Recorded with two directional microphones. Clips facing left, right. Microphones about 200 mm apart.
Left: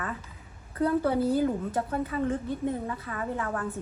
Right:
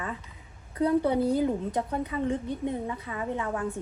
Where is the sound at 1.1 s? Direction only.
5° left (ahead or behind).